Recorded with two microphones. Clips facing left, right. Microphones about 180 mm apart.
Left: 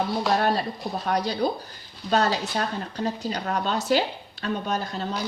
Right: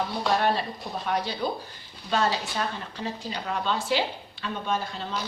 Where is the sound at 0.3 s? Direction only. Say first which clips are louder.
Left 2 dB; 40° left (ahead or behind).